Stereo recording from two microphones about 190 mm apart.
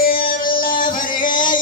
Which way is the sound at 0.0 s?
50° left (ahead or behind).